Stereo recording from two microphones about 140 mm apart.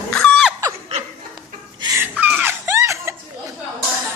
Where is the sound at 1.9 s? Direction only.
10° right (ahead or behind).